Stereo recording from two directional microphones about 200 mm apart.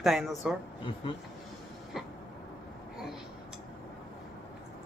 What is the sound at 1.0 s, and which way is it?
Speech, 25° left (ahead or behind).